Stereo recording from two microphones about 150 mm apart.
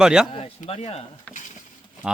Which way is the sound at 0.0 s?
5° right (ahead or behind).